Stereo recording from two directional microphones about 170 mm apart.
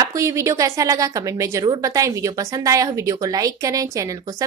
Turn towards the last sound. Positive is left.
turn(degrees=-20)  # may be behind; listen again after turning